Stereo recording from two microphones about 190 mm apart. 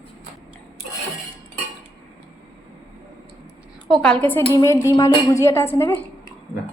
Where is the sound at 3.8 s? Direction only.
Centre (ahead or behind).